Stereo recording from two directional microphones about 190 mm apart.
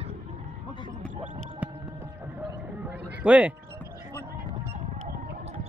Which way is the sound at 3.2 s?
5° right (ahead or behind).